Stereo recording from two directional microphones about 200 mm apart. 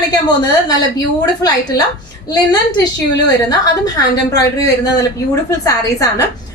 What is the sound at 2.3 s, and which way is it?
A woman's voice, 20° left (ahead or behind).